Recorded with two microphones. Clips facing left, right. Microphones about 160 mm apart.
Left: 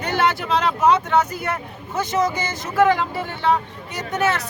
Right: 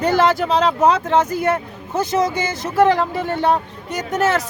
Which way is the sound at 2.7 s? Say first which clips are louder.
Right 2 dB; 35° right (ahead or behind).